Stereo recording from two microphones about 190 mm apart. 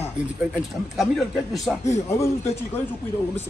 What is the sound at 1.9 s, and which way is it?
Speech, 15° left (ahead or behind).